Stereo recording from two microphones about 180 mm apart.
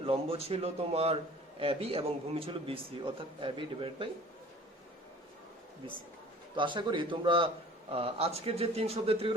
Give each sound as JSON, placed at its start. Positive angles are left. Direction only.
{"t": 0.0, "sound": "a man's voice", "side_deg": -30}
{"t": 6.6, "sound": "a man's voice", "side_deg": -25}